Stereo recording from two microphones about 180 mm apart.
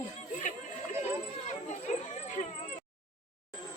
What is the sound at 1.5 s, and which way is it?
Chatter, 40° left (ahead or behind).